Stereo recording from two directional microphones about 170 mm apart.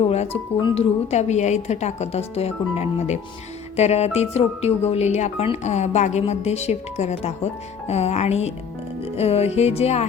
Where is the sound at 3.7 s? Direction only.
40° left (ahead or behind).